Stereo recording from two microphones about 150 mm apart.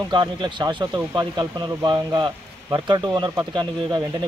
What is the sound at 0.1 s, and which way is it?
Speech, 30° right (ahead or behind).